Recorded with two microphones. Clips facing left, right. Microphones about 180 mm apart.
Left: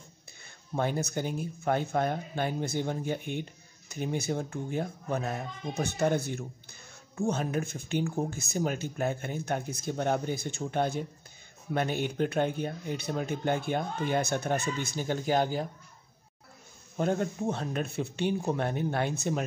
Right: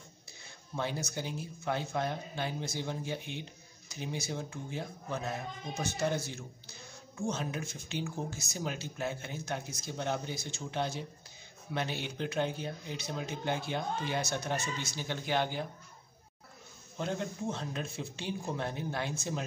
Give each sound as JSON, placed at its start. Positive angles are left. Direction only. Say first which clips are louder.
{"t": 0.7, "sound": "speech", "louder": "left 6 dB", "side_deg": 50}
{"t": 16.9, "sound": "speech", "louder": "left 7 dB", "side_deg": 50}